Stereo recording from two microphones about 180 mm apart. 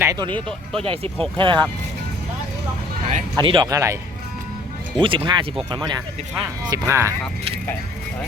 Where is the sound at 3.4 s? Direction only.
25° right (ahead or behind).